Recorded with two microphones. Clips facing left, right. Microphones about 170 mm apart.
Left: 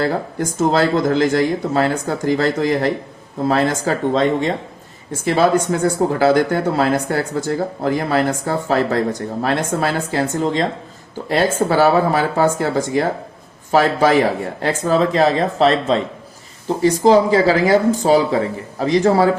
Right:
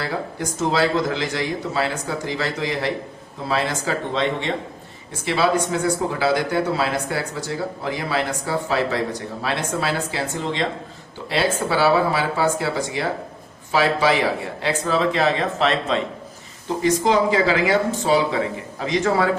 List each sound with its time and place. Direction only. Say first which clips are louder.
0.0 s speech: left 6 dB; 50° left (ahead or behind)